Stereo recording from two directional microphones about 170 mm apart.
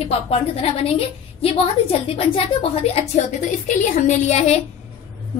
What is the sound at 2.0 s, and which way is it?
Speech, 35° left (ahead or behind).